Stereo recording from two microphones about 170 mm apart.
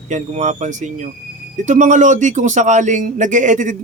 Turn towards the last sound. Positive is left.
turn(degrees=-50)  # may be behind; listen again after turning